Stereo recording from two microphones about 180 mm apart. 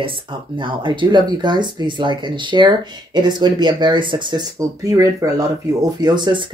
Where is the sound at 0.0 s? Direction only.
30° right (ahead or behind).